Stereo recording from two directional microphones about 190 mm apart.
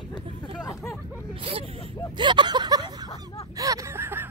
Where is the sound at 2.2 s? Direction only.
25° right (ahead or behind).